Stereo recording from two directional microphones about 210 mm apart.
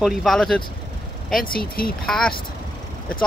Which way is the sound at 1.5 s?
45° left (ahead or behind).